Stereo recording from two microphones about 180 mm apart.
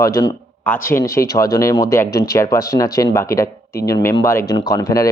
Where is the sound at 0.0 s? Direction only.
20° left (ahead or behind).